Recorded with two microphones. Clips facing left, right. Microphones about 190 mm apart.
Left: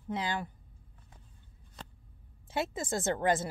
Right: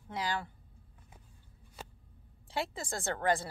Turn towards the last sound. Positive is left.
turn(degrees=20)  # may be behind; listen again after turning